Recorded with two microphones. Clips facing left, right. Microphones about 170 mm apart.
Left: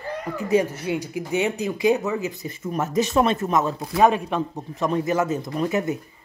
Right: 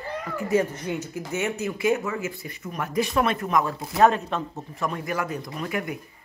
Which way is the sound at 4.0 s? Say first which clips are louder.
Left 1 dB; 15° left (ahead or behind).